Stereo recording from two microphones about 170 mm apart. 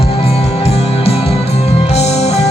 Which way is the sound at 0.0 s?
35° left (ahead or behind).